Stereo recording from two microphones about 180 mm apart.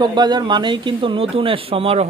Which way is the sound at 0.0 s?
25° right (ahead or behind).